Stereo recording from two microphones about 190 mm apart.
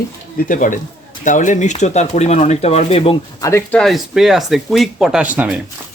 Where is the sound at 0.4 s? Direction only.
45° left (ahead or behind).